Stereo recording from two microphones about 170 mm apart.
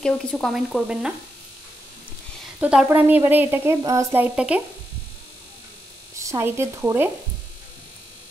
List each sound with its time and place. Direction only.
0.0 s speech: 5° left (ahead or behind)
2.6 s speech: 5° right (ahead or behind)
6.2 s speech: 15° right (ahead or behind)